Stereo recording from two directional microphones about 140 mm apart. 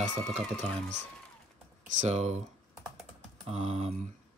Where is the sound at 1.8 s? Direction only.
55° right (ahead or behind).